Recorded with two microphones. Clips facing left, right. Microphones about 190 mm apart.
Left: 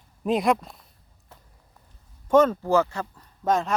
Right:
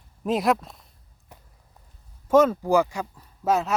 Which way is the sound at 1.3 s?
15° right (ahead or behind).